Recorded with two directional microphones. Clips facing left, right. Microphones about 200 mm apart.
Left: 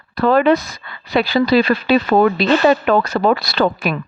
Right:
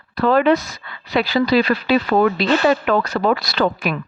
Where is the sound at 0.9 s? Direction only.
35° left (ahead or behind).